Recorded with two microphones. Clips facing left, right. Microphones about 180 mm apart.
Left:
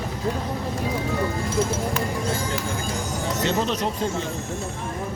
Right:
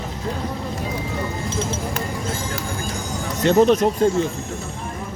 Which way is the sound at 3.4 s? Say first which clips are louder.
Right 11 dB; 50° right (ahead or behind).